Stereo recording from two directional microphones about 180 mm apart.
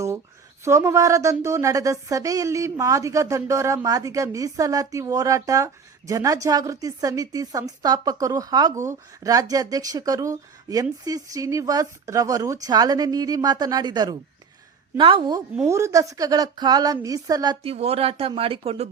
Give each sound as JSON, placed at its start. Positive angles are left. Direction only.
{"t": 0.6, "sound": "a woman's voice", "side_deg": -15}
{"t": 15.6, "sound": "a woman's voice", "side_deg": -15}